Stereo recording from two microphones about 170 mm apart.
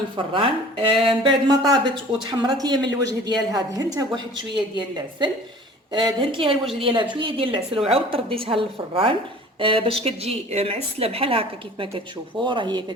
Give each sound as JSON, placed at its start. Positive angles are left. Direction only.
{"t": 0.3, "sound": "a woman's voice", "side_deg": -30}